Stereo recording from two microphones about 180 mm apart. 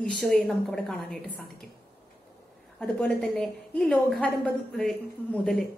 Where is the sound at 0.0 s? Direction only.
Centre (ahead or behind).